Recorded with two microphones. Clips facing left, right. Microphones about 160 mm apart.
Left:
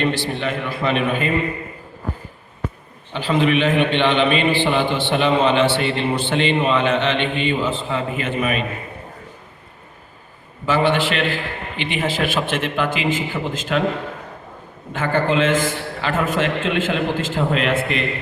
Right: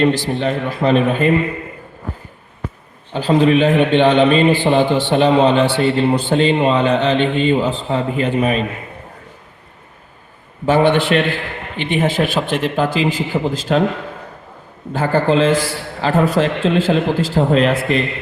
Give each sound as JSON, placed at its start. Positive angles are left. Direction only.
{"t": 0.2, "sound": "a man's voice", "side_deg": -40}
{"t": 3.1, "sound": "a man's voice", "side_deg": -40}
{"t": 10.8, "sound": "a man's voice", "side_deg": -50}
{"t": 14.9, "sound": "a man's voice", "side_deg": -35}